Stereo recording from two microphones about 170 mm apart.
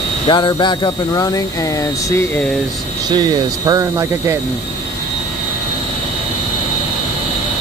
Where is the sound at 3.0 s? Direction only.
25° right (ahead or behind).